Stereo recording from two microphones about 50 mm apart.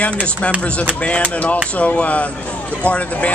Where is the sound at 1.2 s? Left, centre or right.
Left.